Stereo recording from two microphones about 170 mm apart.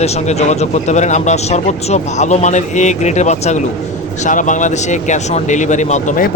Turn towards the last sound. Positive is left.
turn(degrees=50)  # may be behind; listen again after turning